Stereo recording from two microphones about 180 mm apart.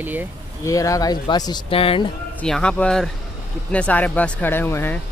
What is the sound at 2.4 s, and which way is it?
Speech, 5° left (ahead or behind).